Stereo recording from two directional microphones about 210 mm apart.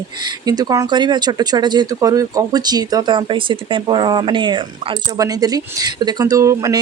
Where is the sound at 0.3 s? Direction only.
20° right (ahead or behind).